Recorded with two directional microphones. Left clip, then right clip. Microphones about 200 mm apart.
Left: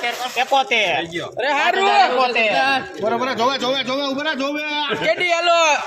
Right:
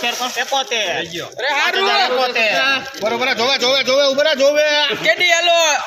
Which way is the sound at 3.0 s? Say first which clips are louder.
Right 2 dB; 20° right (ahead or behind).